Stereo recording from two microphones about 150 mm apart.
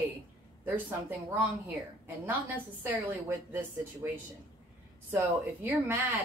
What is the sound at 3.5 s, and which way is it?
A woman's voice, 10° right (ahead or behind).